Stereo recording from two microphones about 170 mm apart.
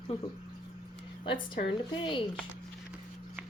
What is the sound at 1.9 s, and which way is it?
Speech, 30° left (ahead or behind).